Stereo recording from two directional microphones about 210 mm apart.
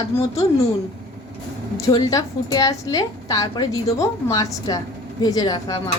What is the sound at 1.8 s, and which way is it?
A woman's voice, 15° left (ahead or behind).